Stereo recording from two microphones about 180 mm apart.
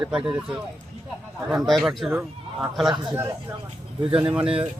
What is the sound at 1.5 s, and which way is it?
Speech, centre (ahead or behind).